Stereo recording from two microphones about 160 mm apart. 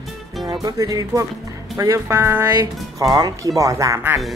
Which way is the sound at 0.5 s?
20° right (ahead or behind).